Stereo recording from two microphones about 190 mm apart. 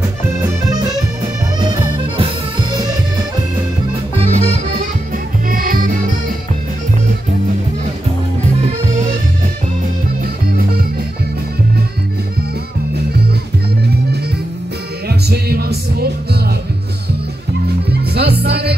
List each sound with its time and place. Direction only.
0.4 s accordion: 20° right (ahead or behind)
1.6 s music: 25° right (ahead or behind)
4.2 s music: 35° right (ahead or behind)
5.5 s music: 50° right (ahead or behind)
15.0 s music: 55° right (ahead or behind)
18.1 s music: 55° right (ahead or behind)